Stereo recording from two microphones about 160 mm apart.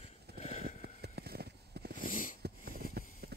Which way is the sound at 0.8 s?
90° right.